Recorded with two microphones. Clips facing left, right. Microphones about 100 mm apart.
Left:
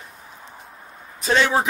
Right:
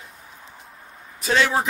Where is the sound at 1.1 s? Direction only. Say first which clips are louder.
Left 1 dB; 35° left (ahead or behind).